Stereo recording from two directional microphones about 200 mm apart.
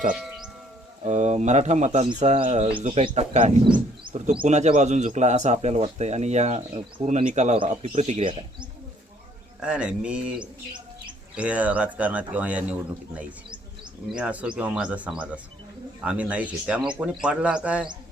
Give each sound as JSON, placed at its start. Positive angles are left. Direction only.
{"t": 1.0, "sound": "speech", "side_deg": -35}
{"t": 9.6, "sound": "a man's voice", "side_deg": -5}
{"t": 10.4, "sound": "bird", "side_deg": -25}
{"t": 11.3, "sound": "speech", "side_deg": -5}
{"t": 14.1, "sound": "a man's voice", "side_deg": -5}